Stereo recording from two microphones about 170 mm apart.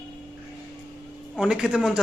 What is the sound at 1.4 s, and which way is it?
Speech, 5° right (ahead or behind).